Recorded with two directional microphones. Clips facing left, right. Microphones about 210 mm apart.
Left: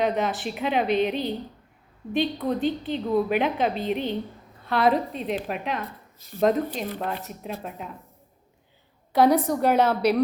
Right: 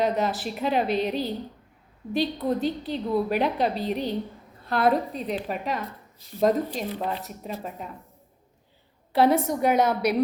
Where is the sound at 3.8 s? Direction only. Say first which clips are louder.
Left 1 dB; 40° right (ahead or behind).